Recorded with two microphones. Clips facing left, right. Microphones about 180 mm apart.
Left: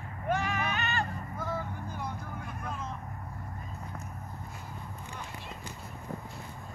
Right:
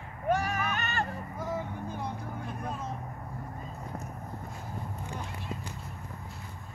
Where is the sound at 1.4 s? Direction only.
25° right (ahead or behind).